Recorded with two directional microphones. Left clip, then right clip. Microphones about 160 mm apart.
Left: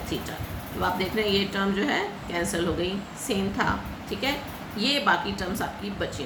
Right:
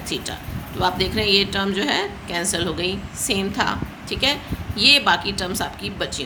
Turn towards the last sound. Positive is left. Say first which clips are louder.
# right 5 dB
turn(degrees=-50)  # may be behind; listen again after turning